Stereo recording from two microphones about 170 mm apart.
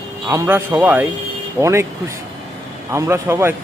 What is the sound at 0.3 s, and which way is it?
Speech, 15° right (ahead or behind).